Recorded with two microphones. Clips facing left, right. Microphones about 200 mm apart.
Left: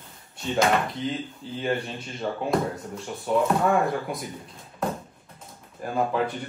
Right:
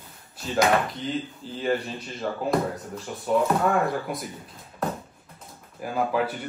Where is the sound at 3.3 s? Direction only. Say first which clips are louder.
Even; centre (ahead or behind).